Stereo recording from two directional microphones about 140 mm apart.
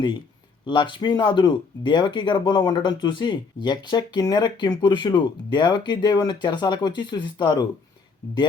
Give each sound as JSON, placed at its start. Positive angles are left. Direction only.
{"t": 0.6, "sound": "speech", "side_deg": 35}